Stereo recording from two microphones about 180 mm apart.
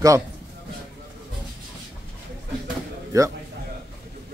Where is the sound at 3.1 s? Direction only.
20° right (ahead or behind).